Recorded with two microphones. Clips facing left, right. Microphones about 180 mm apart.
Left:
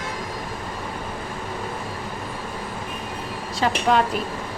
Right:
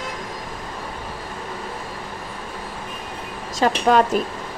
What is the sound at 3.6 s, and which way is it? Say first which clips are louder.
Speech: right 3 dB; 45° right (ahead or behind).